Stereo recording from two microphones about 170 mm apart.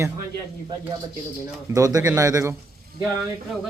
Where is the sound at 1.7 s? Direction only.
20° right (ahead or behind).